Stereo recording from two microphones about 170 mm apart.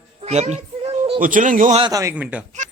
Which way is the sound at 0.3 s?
40° right (ahead or behind).